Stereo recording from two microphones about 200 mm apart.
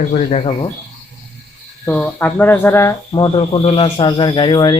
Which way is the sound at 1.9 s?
10° left (ahead or behind).